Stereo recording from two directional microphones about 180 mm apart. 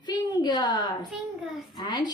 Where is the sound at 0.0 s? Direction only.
25° left (ahead or behind).